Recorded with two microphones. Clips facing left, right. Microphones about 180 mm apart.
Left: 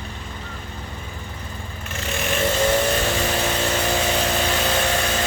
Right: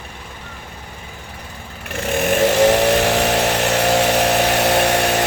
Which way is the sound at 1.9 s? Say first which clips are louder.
Right 8 dB; 60° right (ahead or behind).